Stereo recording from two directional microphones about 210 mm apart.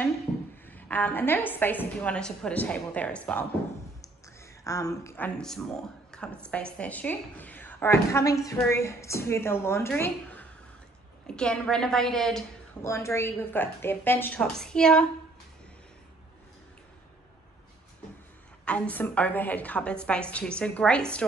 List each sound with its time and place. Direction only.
0.7 s a woman's voice: 10° left (ahead or behind)
4.6 s a woman's voice: 15° left (ahead or behind)
12.8 s a woman's voice: 15° left (ahead or behind)
18.7 s a woman's voice: 5° left (ahead or behind)